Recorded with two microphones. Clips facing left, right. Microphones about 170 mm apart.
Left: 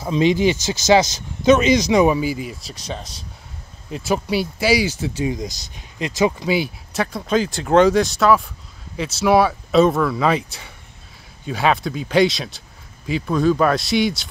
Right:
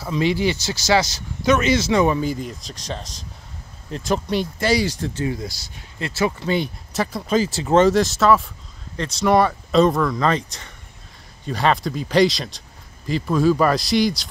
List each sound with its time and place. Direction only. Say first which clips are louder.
0.0 s speech: left 4 dB; 20° left (ahead or behind)
3.9 s speech: left 1 dB; 5° left (ahead or behind)
5.2 s speech: left 2 dB; 15° left (ahead or behind)
6.5 s speech: left 1 dB; 5° left (ahead or behind)